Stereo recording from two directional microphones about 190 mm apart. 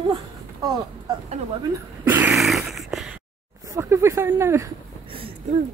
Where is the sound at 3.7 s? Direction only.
15° right (ahead or behind).